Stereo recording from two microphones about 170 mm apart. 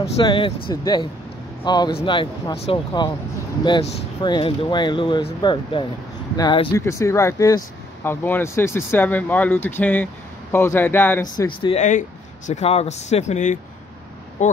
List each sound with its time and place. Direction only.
0.2 s speech: 30° left (ahead or behind); by 11.4 s 15° left (ahead or behind)
11.6 s speech: 40° left (ahead or behind)